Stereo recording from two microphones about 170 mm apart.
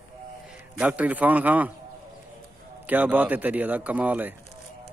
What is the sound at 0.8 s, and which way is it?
Speech, 10° right (ahead or behind).